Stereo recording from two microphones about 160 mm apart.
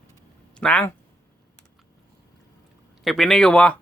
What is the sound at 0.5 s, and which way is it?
Speech, 5° left (ahead or behind).